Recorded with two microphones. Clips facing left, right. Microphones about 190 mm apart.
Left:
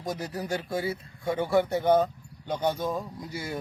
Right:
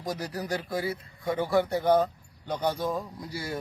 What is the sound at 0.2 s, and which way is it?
Speech, 25° left (ahead or behind).